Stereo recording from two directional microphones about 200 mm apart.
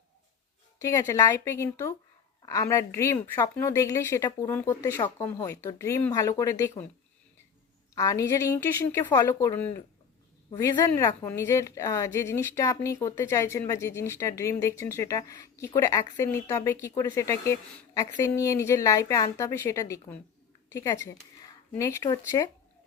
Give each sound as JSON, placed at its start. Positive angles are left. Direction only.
{"t": 0.8, "sound": "speech", "side_deg": 15}
{"t": 7.9, "sound": "speech", "side_deg": 15}
{"t": 10.8, "sound": "a woman's voice", "side_deg": 15}